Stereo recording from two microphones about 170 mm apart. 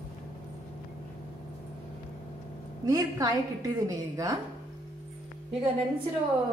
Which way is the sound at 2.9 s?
20° right (ahead or behind).